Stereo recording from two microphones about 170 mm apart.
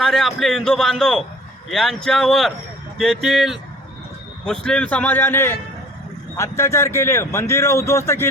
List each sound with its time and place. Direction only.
0.0 s a man's voice: centre (ahead or behind)